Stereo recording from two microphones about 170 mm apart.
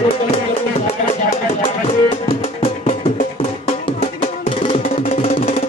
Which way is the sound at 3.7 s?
35° left (ahead or behind).